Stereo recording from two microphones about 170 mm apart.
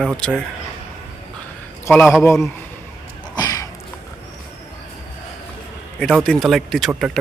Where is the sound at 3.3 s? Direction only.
20° left (ahead or behind).